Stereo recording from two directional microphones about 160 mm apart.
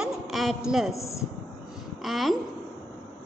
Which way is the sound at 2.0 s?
Centre (ahead or behind).